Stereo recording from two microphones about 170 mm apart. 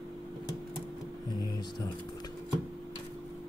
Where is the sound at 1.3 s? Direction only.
25° left (ahead or behind).